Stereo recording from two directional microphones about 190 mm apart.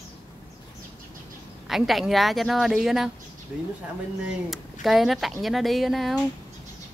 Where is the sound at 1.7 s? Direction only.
Centre (ahead or behind).